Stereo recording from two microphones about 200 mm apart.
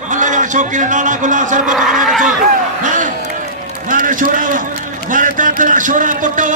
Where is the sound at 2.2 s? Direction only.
40° right (ahead or behind).